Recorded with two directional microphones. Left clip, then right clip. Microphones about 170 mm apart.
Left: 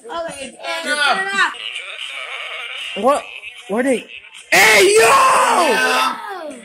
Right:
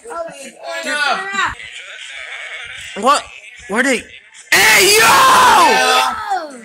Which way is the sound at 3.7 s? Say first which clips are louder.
Right 2 dB; 10° left (ahead or behind).